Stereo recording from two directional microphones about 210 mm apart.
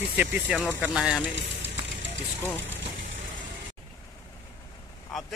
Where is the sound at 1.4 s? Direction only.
60° right (ahead or behind).